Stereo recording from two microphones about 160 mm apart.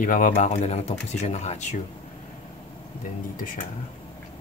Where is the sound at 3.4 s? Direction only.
60° left (ahead or behind).